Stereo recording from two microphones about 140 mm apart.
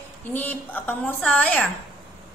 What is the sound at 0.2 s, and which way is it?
A woman's voice, 15° left (ahead or behind).